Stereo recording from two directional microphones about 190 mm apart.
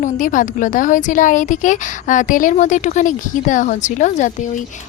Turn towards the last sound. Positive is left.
turn(degrees=40)  # may be behind; listen again after turning